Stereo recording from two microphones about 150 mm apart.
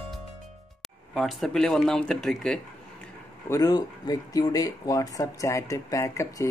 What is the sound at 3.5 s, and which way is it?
Speech, 25° left (ahead or behind).